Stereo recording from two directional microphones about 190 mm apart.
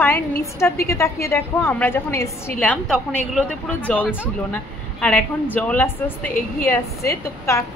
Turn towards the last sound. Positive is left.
turn(degrees=15)  # may be behind; listen again after turning